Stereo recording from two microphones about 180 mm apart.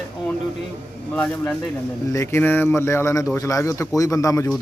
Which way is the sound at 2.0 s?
15° left (ahead or behind).